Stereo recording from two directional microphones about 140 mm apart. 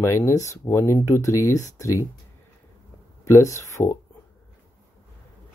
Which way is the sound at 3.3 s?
20° left (ahead or behind).